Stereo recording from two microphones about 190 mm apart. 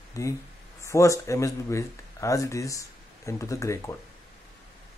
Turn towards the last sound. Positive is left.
turn(degrees=15)  # may be behind; listen again after turning